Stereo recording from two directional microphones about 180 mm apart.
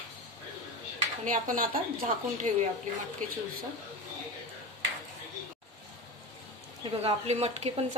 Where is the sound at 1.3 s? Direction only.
50° right (ahead or behind).